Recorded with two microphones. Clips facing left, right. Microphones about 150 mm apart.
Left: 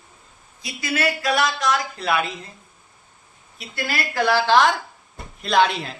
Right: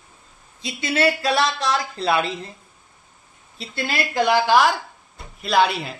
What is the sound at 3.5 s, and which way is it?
A woman's voice, 25° right (ahead or behind).